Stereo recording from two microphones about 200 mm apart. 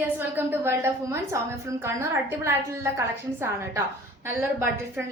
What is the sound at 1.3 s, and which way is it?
A woman's voice, 15° right (ahead or behind).